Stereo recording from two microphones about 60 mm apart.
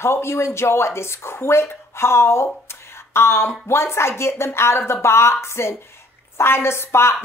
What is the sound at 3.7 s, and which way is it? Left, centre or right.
A woman's voice, left.